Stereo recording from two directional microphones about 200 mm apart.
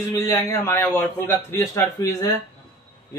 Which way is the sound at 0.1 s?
15° left (ahead or behind).